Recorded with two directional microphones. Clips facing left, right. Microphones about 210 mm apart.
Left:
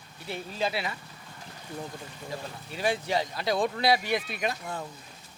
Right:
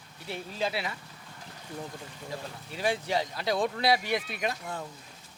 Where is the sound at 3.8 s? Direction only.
10° left (ahead or behind).